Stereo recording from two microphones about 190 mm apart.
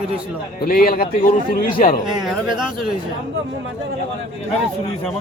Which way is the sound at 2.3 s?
5° right (ahead or behind).